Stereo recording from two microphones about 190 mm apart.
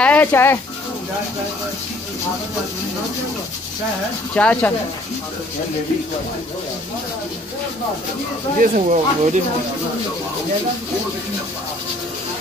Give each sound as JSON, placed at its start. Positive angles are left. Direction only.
{"t": 0.0, "sound": "speech", "side_deg": 10}
{"t": 4.4, "sound": "speech", "side_deg": 10}
{"t": 8.5, "sound": "speech", "side_deg": -40}